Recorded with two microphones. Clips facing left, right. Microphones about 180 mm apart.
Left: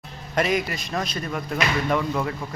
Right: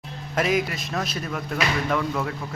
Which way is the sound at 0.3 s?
Centre (ahead or behind).